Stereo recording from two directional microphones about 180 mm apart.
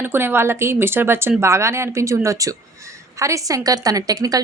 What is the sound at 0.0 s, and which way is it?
A woman's voice, 10° right (ahead or behind).